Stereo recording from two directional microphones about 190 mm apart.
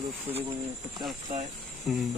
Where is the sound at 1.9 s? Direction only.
Centre (ahead or behind).